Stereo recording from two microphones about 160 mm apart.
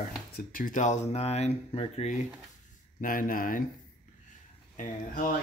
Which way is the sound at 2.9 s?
60° left (ahead or behind).